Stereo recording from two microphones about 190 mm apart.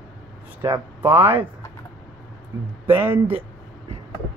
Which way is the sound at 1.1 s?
10° right (ahead or behind).